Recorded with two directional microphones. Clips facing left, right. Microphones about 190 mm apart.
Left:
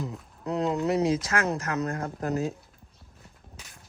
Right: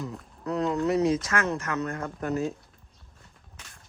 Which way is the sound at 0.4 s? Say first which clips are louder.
Even; 25° left (ahead or behind).